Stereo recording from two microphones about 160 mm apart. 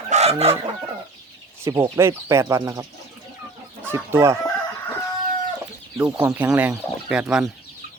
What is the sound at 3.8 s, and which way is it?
Speech, 15° right (ahead or behind).